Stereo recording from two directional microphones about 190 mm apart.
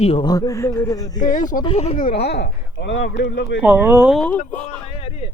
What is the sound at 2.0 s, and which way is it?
Speech, 55° left (ahead or behind).